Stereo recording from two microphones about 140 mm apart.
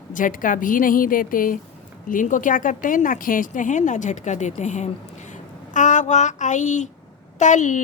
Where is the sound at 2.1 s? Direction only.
70° left (ahead or behind).